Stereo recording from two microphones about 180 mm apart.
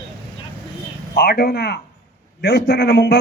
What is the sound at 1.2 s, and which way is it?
A man's voice, 60° left (ahead or behind).